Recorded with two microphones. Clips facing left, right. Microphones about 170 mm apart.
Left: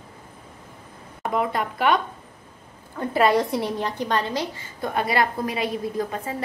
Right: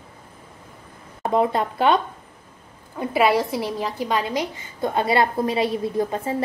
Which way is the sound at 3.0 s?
10° right (ahead or behind).